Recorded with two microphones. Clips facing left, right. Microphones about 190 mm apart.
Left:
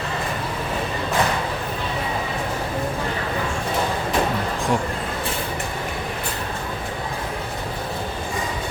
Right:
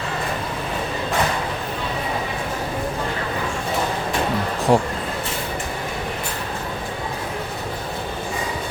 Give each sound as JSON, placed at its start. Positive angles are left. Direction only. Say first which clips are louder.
{"t": 4.7, "sound": "speech", "louder": "right 6 dB", "side_deg": -35}